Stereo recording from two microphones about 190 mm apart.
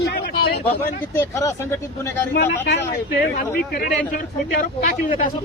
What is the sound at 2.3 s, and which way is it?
Speech, 65° left (ahead or behind).